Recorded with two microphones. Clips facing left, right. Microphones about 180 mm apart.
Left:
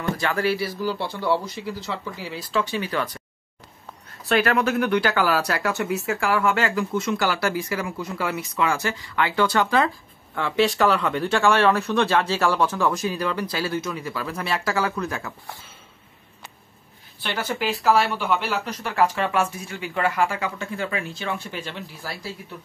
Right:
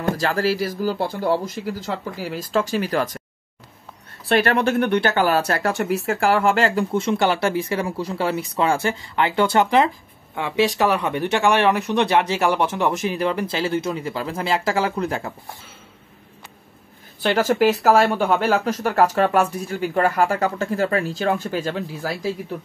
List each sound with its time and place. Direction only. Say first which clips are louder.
0.0 s speech: right 3 dB; 35° right (ahead or behind)
4.2 s speech: right 2 dB; 30° right (ahead or behind)
17.5 s speech: right 4 dB; 45° right (ahead or behind)